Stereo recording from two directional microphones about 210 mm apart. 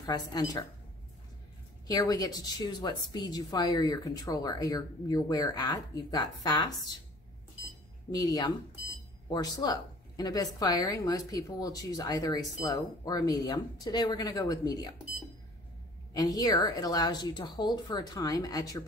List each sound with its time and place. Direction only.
0.0 s a woman's voice: 20° left (ahead or behind)
1.9 s a woman's voice: 20° left (ahead or behind)
8.1 s a woman's voice: 20° left (ahead or behind)
16.1 s a woman's voice: 15° left (ahead or behind)